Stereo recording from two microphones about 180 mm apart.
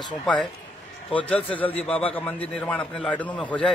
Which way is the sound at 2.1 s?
10° left (ahead or behind).